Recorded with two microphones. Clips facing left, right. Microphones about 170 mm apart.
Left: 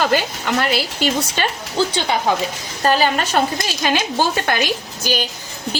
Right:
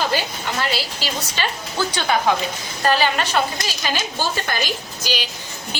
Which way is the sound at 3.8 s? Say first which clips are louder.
Left 6 dB; 55° left (ahead or behind).